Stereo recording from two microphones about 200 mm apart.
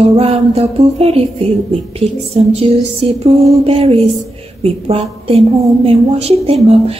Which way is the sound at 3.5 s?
25° right (ahead or behind).